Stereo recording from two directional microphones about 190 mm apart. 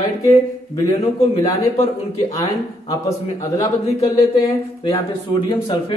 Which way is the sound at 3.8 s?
35° left (ahead or behind).